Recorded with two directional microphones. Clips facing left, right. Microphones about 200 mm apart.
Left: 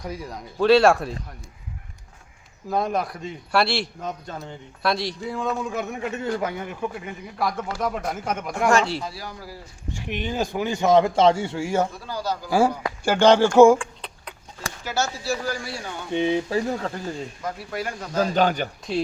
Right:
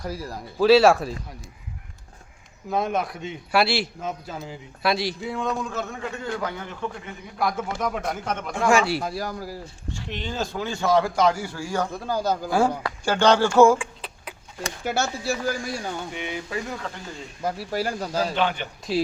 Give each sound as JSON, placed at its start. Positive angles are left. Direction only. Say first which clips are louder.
{"t": 0.0, "sound": "a man's voice", "louder": "right 1 dB", "side_deg": -5}
{"t": 2.6, "sound": "a man's voice", "louder": "left 1 dB", "side_deg": 0}
{"t": 8.7, "sound": "speech", "louder": "right 1 dB", "side_deg": -10}
{"t": 9.0, "sound": "a man's voice", "louder": "right 6 dB", "side_deg": -45}
{"t": 9.9, "sound": "a man's voice", "louder": "left 4 dB", "side_deg": 15}
{"t": 12.0, "sound": "a man's voice", "louder": "right 4 dB", "side_deg": -50}
{"t": 12.5, "sound": "speech", "louder": "left 5 dB", "side_deg": 10}
{"t": 13.7, "sound": "a sound", "louder": "left 1 dB", "side_deg": -5}
{"t": 14.8, "sound": "a man's voice", "louder": "even", "side_deg": -55}
{"t": 16.1, "sound": "speech", "louder": "left 9 dB", "side_deg": 30}
{"t": 17.4, "sound": "speech", "louder": "right 6 dB", "side_deg": -30}
{"t": 18.3, "sound": "speech", "louder": "left 4 dB", "side_deg": 40}